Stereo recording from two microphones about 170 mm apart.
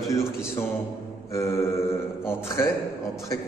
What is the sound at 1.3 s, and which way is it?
A man's voice, 15° left (ahead or behind).